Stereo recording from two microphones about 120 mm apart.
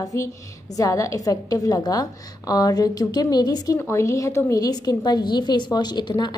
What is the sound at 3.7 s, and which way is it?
A woman's voice, 20° left (ahead or behind).